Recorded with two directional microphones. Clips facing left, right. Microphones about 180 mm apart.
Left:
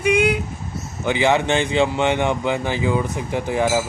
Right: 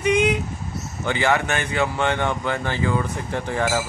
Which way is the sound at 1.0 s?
15° left (ahead or behind).